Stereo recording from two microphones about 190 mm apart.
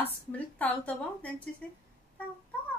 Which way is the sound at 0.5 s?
10° left (ahead or behind).